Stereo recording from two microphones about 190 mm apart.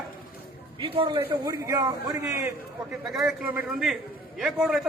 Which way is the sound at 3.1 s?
Centre (ahead or behind).